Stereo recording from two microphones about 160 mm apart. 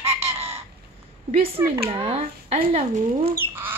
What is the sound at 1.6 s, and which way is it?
Speech, 20° right (ahead or behind).